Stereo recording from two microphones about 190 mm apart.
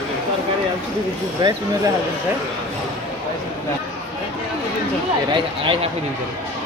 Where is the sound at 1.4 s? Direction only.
25° right (ahead or behind).